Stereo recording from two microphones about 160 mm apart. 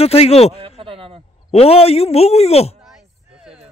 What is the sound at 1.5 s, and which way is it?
A man's voice, 40° left (ahead or behind).